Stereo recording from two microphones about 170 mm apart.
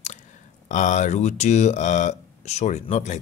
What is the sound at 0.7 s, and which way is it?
Speech, 45° left (ahead or behind).